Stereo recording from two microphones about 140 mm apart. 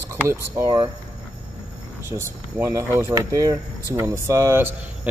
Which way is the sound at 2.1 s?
20° right (ahead or behind).